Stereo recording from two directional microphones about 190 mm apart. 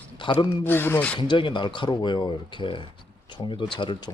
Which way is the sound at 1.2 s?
25° left (ahead or behind).